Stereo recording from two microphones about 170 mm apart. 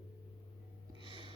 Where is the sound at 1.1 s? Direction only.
30° right (ahead or behind).